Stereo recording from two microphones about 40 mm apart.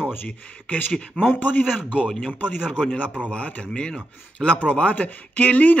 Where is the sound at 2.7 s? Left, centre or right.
Centre.